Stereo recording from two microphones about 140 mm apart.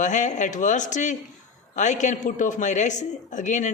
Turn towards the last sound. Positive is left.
turn(degrees=60)  # may be behind; listen again after turning